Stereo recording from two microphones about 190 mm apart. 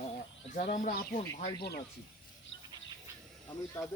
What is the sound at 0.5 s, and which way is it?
Speech, 40° left (ahead or behind).